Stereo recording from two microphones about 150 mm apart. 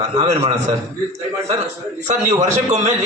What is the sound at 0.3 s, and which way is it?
Speech, 45° right (ahead or behind).